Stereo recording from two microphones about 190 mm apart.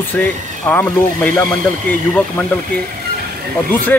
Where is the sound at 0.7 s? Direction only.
10° left (ahead or behind).